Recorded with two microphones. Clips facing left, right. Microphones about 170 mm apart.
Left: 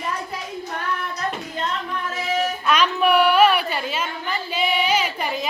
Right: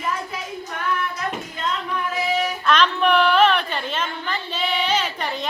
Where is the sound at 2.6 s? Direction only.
10° left (ahead or behind).